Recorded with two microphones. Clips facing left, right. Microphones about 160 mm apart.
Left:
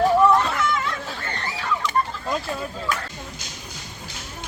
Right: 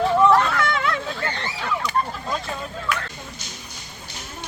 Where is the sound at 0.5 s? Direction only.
75° right (ahead or behind).